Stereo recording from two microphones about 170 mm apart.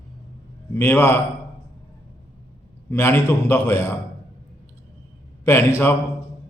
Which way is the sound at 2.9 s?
15° left (ahead or behind).